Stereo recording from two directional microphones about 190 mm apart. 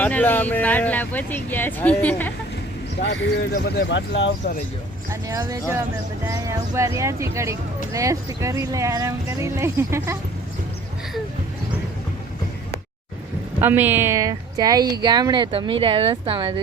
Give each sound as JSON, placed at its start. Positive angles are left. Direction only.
{"t": 0.0, "sound": "speech", "side_deg": 10}
{"t": 3.5, "sound": "speech", "side_deg": 60}
{"t": 5.3, "sound": "speech", "side_deg": -15}
{"t": 13.6, "sound": "speech", "side_deg": -10}